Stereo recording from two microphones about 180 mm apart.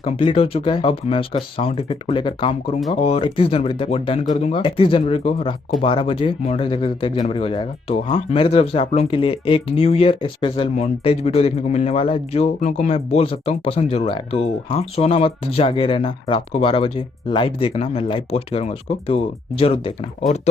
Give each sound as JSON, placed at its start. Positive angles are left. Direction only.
{"t": 0.0, "sound": "speech", "side_deg": 30}